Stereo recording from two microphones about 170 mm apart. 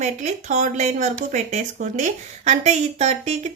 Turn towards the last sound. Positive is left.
turn(degrees=-40)  # may be behind; listen again after turning